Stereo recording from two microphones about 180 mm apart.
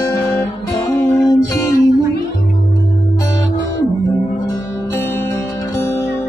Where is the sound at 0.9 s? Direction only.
15° left (ahead or behind).